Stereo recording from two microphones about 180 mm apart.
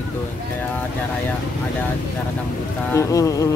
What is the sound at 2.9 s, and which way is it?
Speech, 15° left (ahead or behind).